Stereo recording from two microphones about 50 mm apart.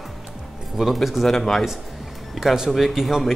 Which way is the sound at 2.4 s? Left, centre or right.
Centre.